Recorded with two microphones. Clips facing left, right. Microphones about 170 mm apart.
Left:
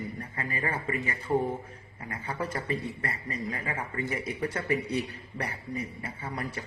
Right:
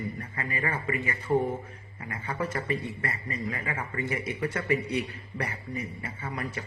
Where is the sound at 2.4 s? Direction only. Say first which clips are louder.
Right 2 dB; 30° left (ahead or behind).